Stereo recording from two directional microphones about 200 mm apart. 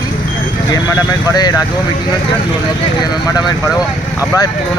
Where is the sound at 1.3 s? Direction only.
20° left (ahead or behind).